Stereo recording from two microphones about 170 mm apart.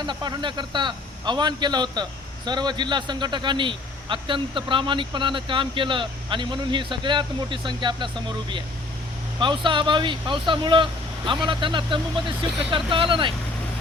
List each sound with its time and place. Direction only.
0.0 s a man's voice: 25° right (ahead or behind)